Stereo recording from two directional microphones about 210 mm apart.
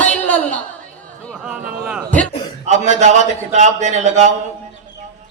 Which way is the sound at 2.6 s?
35° right (ahead or behind).